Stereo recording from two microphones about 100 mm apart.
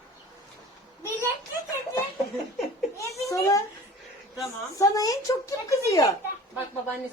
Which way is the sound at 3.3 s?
30° left (ahead or behind).